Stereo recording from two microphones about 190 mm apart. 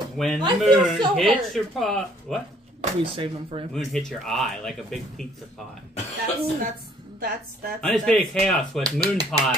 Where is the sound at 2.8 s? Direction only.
30° right (ahead or behind).